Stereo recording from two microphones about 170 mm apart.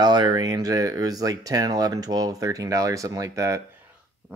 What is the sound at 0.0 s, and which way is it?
Speech, 25° right (ahead or behind).